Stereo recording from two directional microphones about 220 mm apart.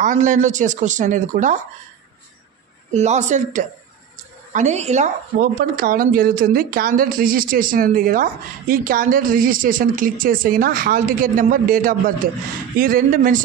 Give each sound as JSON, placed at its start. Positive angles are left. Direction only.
{"t": 0.0, "sound": "a woman's voice", "side_deg": -35}
{"t": 2.9, "sound": "a woman's voice", "side_deg": -30}